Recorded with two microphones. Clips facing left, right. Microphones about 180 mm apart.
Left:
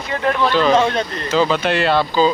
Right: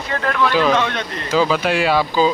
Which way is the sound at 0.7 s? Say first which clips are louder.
Left 4 dB; 30° left (ahead or behind).